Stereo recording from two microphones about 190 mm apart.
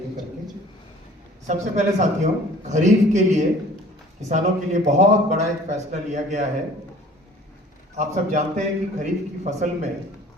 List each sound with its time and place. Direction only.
1.5 s a man's voice: 40° right (ahead or behind)
7.9 s a man's voice: 40° right (ahead or behind)